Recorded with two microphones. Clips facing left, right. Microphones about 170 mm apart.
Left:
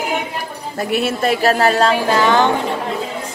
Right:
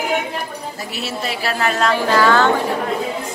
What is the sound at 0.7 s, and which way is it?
A woman's voice, 55° left (ahead or behind).